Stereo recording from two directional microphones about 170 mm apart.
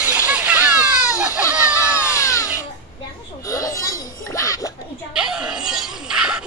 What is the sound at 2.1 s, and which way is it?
Music, 20° left (ahead or behind).